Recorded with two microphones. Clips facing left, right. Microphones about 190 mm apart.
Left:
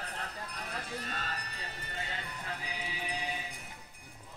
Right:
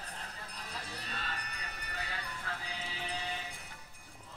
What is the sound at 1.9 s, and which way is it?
Horse, 25° left (ahead or behind).